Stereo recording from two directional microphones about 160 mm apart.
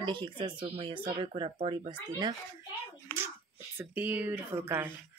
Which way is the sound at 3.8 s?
10° right (ahead or behind).